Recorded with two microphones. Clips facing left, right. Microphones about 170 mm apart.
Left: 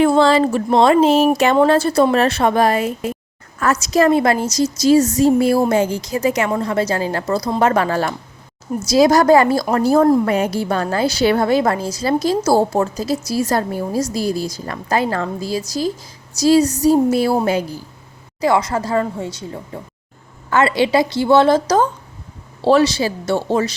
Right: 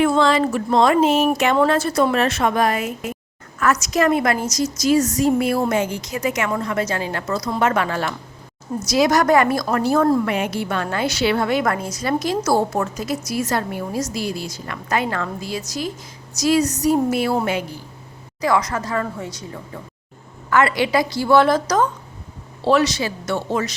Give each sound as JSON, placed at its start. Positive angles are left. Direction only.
{"t": 0.0, "sound": "a woman's voice", "side_deg": 30}